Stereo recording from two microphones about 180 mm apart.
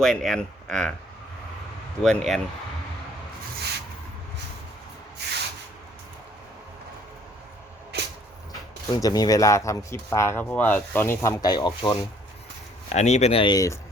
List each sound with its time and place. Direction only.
0.0 s speech: centre (ahead or behind)
2.0 s speech: centre (ahead or behind)
5.2 s a sound: 65° right (ahead or behind)
7.9 s vehicle: 65° right (ahead or behind)
9.0 s speech: 20° left (ahead or behind)
12.9 s speech: 40° left (ahead or behind); by 13.7 s 20° left (ahead or behind)